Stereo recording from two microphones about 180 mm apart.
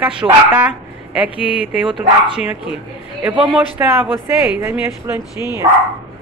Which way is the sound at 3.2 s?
10° right (ahead or behind).